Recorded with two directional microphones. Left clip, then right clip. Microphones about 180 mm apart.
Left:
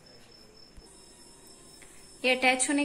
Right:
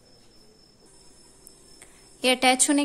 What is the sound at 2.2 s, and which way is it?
Speech, 70° right (ahead or behind).